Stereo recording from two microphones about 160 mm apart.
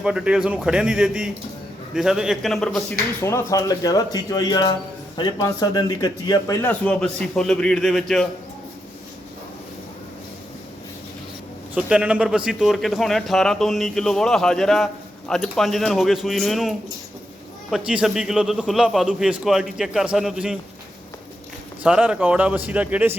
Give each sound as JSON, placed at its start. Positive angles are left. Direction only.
{"t": 0.0, "sound": "a man's voice", "side_deg": -5}
{"t": 3.2, "sound": "speech", "side_deg": 15}
{"t": 6.6, "sound": "a man's voice", "side_deg": 10}
{"t": 11.7, "sound": "a man's voice", "side_deg": -5}
{"t": 21.8, "sound": "a man's voice", "side_deg": -5}